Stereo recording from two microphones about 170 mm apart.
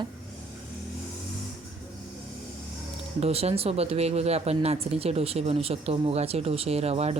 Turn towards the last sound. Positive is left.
turn(degrees=-35)  # may be behind; listen again after turning